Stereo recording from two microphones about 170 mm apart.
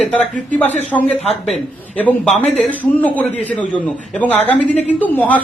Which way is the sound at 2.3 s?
40° left (ahead or behind).